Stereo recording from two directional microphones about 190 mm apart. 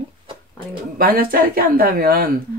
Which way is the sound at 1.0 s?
50° right (ahead or behind).